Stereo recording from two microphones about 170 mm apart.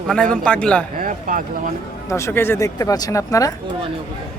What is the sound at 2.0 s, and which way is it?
Speech, 15° left (ahead or behind).